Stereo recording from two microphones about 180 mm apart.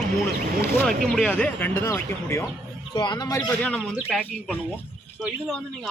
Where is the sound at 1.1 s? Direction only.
5° left (ahead or behind).